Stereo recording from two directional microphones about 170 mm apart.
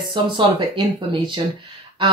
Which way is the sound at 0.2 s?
25° right (ahead or behind).